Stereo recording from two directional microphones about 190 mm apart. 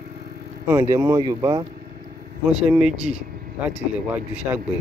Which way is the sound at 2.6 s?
5° right (ahead or behind).